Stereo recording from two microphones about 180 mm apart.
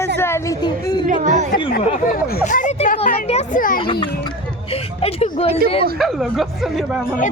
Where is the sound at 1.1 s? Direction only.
45° right (ahead or behind).